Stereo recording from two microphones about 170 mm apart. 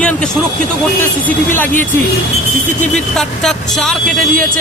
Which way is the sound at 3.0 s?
5° left (ahead or behind).